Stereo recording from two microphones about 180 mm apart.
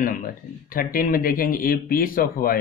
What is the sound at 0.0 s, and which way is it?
Speech, 50° left (ahead or behind).